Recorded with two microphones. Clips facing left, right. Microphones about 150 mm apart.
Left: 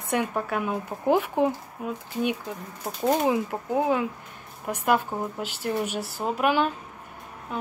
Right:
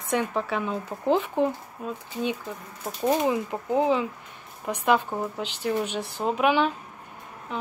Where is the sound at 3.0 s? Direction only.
10° left (ahead or behind).